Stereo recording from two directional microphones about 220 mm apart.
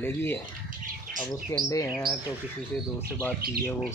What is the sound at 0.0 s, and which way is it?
Speech, 10° left (ahead or behind).